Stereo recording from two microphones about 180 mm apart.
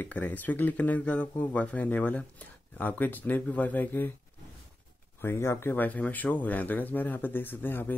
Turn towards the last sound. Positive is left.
turn(degrees=10)  # may be behind; listen again after turning